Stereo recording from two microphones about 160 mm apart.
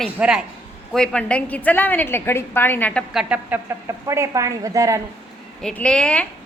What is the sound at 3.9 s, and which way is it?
A woman's voice, 20° right (ahead or behind).